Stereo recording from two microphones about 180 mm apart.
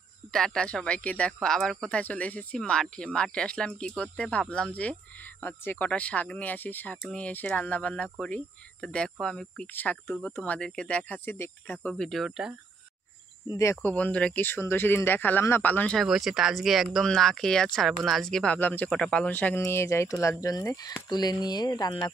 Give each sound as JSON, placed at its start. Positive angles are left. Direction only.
{"t": 0.3, "sound": "speech", "side_deg": 5}
{"t": 13.6, "sound": "speech", "side_deg": 10}